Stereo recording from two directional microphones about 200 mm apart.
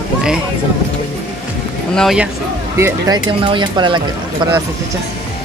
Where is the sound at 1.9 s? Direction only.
Centre (ahead or behind).